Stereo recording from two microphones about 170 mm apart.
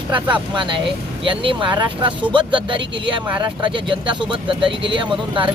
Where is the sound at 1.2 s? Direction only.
30° right (ahead or behind).